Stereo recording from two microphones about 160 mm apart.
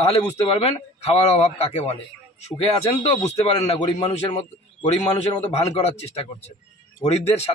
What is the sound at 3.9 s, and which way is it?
A man's voice, 45° left (ahead or behind).